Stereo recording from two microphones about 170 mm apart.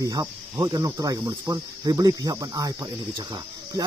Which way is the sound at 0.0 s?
20° right (ahead or behind).